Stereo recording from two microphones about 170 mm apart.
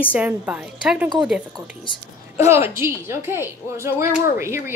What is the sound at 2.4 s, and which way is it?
Speech, 15° right (ahead or behind).